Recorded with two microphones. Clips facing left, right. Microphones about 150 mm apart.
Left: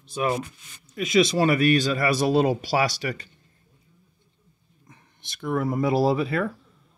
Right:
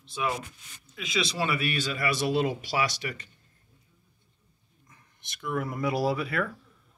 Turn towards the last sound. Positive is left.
turn(degrees=25)  # may be behind; listen again after turning